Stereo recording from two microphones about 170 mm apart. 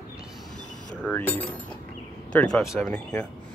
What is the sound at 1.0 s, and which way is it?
Speech, 10° left (ahead or behind).